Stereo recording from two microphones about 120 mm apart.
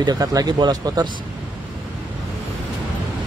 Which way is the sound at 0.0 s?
30° right (ahead or behind).